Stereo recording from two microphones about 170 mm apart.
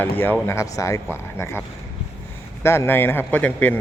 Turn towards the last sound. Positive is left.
turn(degrees=10)  # may be behind; listen again after turning